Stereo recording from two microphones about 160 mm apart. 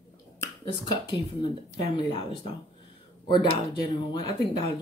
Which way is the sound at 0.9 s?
30° left (ahead or behind).